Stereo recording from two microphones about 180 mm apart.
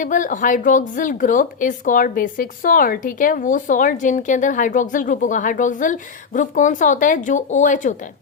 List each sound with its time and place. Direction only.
0.0 s a woman's voice: 45° left (ahead or behind)